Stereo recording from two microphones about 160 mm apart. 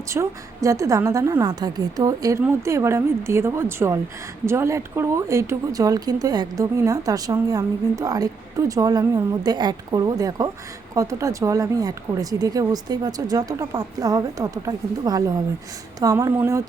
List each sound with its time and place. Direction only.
0.1 s a woman's voice: 20° right (ahead or behind)